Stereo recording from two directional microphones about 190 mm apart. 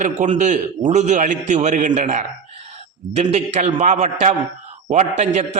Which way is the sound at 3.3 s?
35° right (ahead or behind).